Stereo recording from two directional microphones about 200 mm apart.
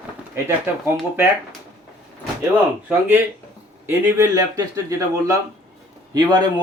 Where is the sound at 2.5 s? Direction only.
10° right (ahead or behind).